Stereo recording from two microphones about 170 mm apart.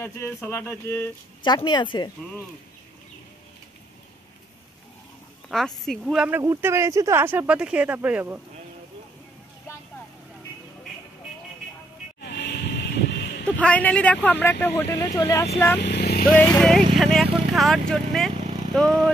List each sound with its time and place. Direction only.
0.0 s speech: 15° left (ahead or behind)
1.4 s speech: 25° left (ahead or behind)
5.5 s speech: centre (ahead or behind)
12.2 s vehicle: 80° left
13.6 s speech: 10° left (ahead or behind)
15.8 s vehicle: 70° left (ahead or behind)
16.3 s speech: 10° left (ahead or behind)